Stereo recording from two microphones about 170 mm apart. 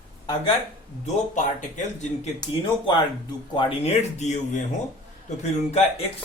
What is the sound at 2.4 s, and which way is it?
Speech, 25° left (ahead or behind).